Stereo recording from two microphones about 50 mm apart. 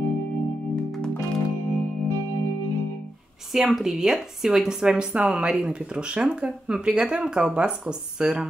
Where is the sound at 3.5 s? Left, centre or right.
Centre.